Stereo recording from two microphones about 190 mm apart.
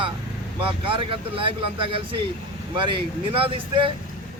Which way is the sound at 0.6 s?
25° right (ahead or behind).